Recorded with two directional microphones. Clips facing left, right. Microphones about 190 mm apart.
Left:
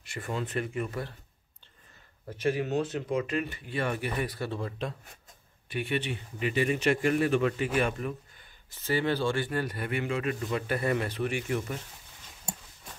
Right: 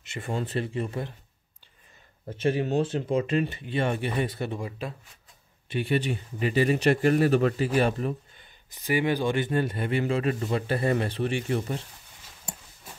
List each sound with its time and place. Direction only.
0.0 s speech: 25° right (ahead or behind)
2.2 s speech: 25° right (ahead or behind); by 4.9 s 10° right (ahead or behind)
5.7 s speech: 35° right (ahead or behind)
8.4 s speech: 15° right (ahead or behind); by 11.8 s 30° right (ahead or behind)